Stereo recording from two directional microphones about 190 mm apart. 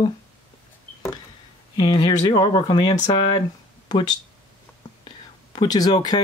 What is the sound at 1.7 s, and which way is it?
Speech, 25° left (ahead or behind).